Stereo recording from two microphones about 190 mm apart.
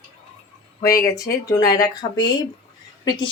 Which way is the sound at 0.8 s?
20° left (ahead or behind).